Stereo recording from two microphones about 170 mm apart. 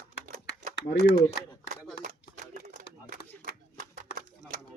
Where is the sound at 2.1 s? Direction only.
55° right (ahead or behind).